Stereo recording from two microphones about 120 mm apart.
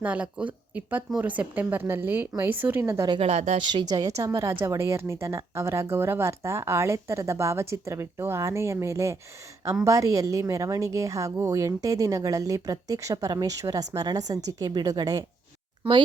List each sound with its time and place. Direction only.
0.0 s a woman's voice: 10° right (ahead or behind)
3.2 s speech: 65° right (ahead or behind)
3.6 s a woman's voice: 40° right (ahead or behind)
15.8 s speech: 45° right (ahead or behind)